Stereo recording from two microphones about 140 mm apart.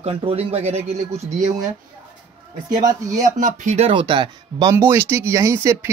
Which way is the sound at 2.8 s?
25° right (ahead or behind).